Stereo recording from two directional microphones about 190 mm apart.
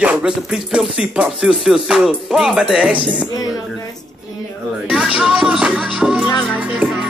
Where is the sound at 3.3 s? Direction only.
20° left (ahead or behind).